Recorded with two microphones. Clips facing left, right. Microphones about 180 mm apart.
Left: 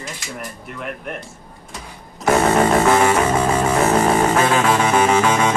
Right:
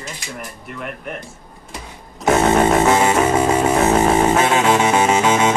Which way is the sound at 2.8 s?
25° right (ahead or behind).